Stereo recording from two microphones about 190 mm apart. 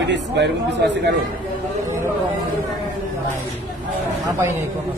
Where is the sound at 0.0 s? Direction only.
65° right (ahead or behind).